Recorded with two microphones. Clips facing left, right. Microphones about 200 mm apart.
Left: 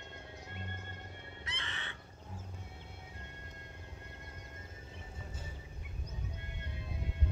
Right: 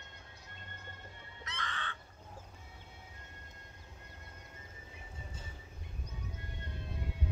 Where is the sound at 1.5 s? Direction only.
20° left (ahead or behind).